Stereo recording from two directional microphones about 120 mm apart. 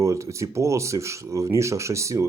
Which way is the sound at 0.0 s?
25° right (ahead or behind).